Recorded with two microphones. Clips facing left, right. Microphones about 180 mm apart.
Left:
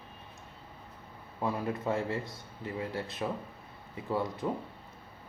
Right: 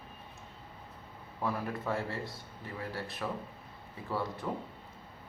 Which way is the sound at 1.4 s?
20° left (ahead or behind).